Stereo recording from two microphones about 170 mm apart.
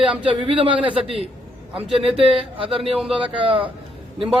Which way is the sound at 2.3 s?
30° right (ahead or behind).